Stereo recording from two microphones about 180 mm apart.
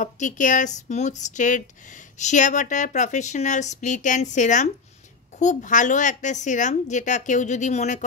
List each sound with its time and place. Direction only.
0.0 s speech: 45° left (ahead or behind)